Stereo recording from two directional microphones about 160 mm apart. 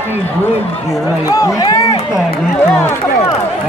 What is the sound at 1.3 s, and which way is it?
Speech, 20° left (ahead or behind).